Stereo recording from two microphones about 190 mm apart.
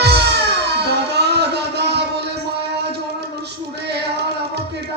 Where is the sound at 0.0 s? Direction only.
60° right (ahead or behind).